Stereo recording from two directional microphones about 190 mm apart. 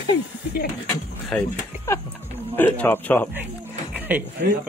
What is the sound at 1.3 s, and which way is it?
Speech, 10° left (ahead or behind).